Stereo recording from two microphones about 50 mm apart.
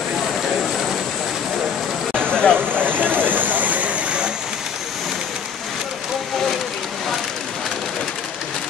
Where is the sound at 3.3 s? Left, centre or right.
Right.